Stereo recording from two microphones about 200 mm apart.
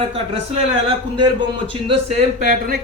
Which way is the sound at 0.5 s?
25° right (ahead or behind).